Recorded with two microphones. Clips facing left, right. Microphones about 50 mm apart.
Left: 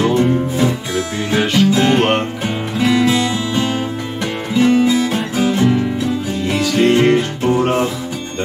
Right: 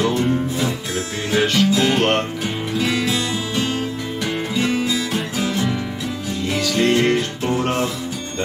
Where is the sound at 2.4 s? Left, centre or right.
Left.